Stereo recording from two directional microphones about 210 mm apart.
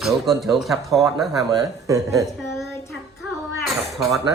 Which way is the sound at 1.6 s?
15° right (ahead or behind).